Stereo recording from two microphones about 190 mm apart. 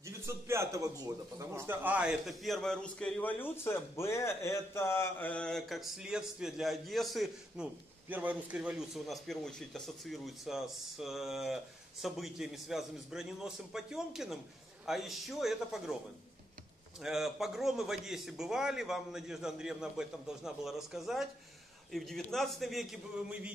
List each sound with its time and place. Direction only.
0.0 s a man's voice: 15° right (ahead or behind)
17.0 s a man's voice: centre (ahead or behind)